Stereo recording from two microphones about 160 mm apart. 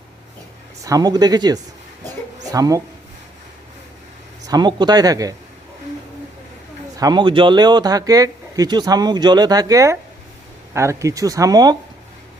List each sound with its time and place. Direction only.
0.8 s speech: 20° right (ahead or behind)
4.4 s speech: 25° right (ahead or behind)
6.9 s speech: 25° right (ahead or behind)